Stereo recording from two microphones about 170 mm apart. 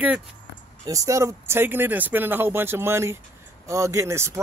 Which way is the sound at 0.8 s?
20° right (ahead or behind).